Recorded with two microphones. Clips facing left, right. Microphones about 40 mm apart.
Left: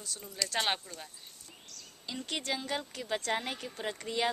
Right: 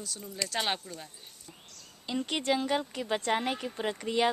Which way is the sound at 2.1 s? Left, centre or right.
Centre.